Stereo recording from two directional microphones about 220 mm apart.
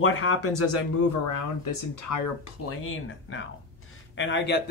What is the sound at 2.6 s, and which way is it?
Speech, 80° left.